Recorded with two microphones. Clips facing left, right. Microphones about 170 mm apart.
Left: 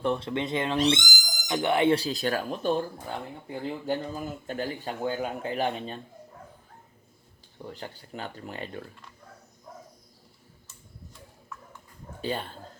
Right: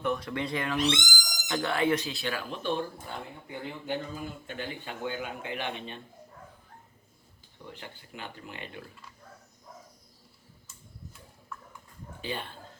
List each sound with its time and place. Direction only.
0.0 s speech: 30° left (ahead or behind)
7.7 s speech: 40° left (ahead or behind)
12.2 s speech: 40° left (ahead or behind)